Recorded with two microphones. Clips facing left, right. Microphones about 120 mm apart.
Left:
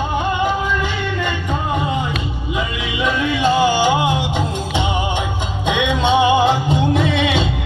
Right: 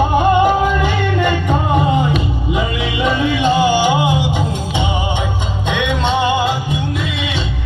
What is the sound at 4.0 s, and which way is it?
Music, 5° right (ahead or behind).